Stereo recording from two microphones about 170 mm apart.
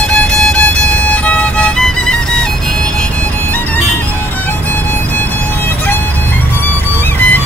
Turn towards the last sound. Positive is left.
turn(degrees=10)  # may be behind; listen again after turning